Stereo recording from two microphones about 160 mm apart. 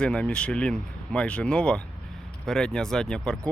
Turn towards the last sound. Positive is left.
turn(degrees=5)  # may be behind; listen again after turning